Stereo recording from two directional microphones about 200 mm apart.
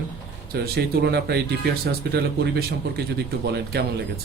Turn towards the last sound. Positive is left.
turn(degrees=-55)  # may be behind; listen again after turning